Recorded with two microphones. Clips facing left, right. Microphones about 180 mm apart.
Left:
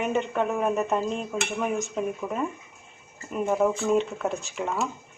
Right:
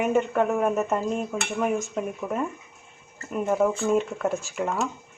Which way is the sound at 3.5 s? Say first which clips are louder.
Right 1 dB; centre (ahead or behind).